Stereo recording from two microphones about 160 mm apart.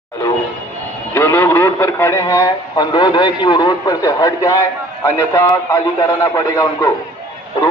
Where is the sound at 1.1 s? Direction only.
15° left (ahead or behind).